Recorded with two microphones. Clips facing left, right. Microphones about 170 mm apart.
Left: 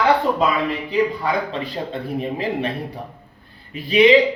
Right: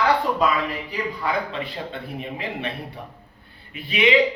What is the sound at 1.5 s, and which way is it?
Speech, 40° left (ahead or behind).